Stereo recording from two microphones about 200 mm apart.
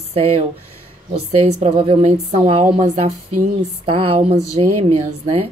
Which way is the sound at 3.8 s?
25° right (ahead or behind).